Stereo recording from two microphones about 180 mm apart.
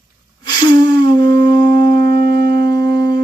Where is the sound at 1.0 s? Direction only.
25° left (ahead or behind).